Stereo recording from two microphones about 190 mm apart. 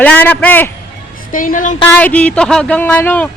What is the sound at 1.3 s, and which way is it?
Speech, 45° left (ahead or behind).